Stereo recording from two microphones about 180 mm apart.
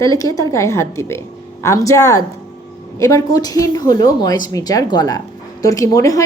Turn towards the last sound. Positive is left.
turn(degrees=20)  # may be behind; listen again after turning